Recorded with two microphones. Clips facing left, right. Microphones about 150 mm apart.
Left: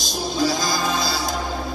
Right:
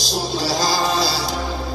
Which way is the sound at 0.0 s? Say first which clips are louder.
Left 1 dB; 50° left (ahead or behind).